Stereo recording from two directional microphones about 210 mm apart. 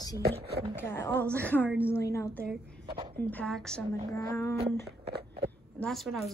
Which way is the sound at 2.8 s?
25° right (ahead or behind).